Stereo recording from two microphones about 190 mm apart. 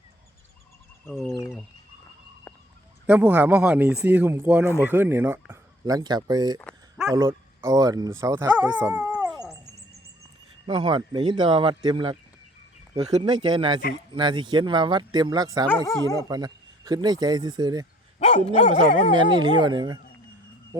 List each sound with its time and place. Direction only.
1.0 s speech: centre (ahead or behind)
3.1 s speech: 10° right (ahead or behind)
6.6 s a sound: 5° left (ahead or behind)
7.1 s speech: 15° right (ahead or behind)
10.7 s speech: 25° right (ahead or behind)
15.6 s speech: 10° left (ahead or behind)
16.1 s speech: 20° right (ahead or behind)
18.2 s dog: 35° left (ahead or behind)
19.1 s speech: 25° right (ahead or behind)